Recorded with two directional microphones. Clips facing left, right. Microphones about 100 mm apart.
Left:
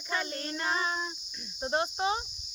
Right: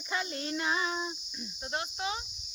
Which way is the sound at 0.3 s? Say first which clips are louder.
Right 2 dB; 15° right (ahead or behind).